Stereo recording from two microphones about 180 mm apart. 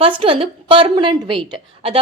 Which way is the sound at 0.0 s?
30° right (ahead or behind).